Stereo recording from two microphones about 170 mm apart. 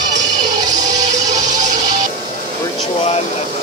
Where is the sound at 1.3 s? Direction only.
45° right (ahead or behind).